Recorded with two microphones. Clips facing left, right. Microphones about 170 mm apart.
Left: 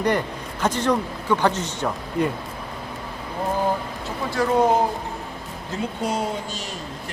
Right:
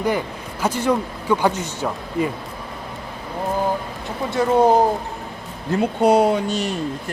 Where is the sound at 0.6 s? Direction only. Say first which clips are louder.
Right 1 dB; 10° right (ahead or behind).